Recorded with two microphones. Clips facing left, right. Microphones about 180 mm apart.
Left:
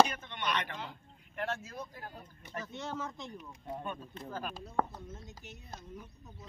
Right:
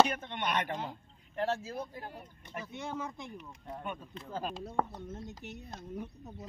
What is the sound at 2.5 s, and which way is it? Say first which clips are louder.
Speech: even; 15° right (ahead or behind).